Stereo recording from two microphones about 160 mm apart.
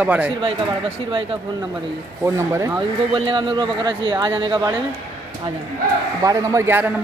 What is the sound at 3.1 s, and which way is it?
A man's voice, 30° right (ahead or behind).